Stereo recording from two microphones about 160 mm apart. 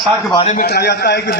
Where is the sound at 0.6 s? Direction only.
80° left.